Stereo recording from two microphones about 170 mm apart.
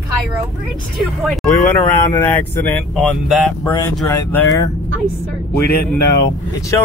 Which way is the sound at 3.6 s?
20° left (ahead or behind).